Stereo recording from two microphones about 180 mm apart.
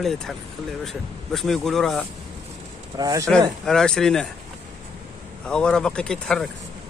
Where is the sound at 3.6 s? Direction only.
5° left (ahead or behind).